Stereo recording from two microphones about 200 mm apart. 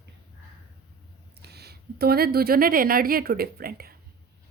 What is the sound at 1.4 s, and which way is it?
A woman's voice, 55° right (ahead or behind).